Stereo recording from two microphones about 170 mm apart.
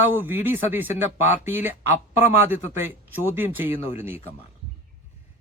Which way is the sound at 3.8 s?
40° left (ahead or behind).